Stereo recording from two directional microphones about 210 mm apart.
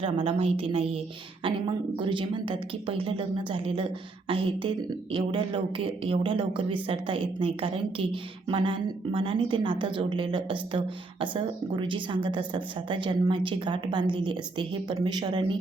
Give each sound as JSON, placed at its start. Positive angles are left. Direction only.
{"t": 0.0, "sound": "speech", "side_deg": -25}
{"t": 5.1, "sound": "speech", "side_deg": -20}